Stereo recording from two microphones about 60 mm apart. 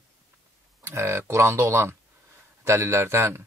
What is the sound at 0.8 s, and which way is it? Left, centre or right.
Speech, right.